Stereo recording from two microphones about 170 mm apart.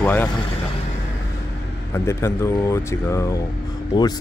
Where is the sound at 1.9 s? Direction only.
15° left (ahead or behind).